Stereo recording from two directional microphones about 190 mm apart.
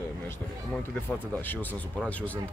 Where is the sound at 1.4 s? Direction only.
10° left (ahead or behind).